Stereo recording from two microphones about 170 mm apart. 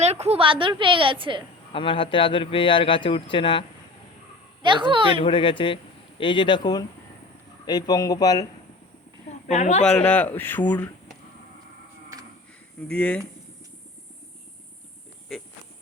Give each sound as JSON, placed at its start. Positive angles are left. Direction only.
{"t": 0.0, "sound": "a woman's voice", "side_deg": -40}
{"t": 1.7, "sound": "a man's voice", "side_deg": 30}
{"t": 4.6, "sound": "a woman's voice", "side_deg": -30}
{"t": 5.2, "sound": "a man's voice", "side_deg": 30}
{"t": 9.5, "sound": "speech", "side_deg": 40}
{"t": 9.8, "sound": "a man's voice", "side_deg": 5}
{"t": 12.9, "sound": "a man's voice", "side_deg": 10}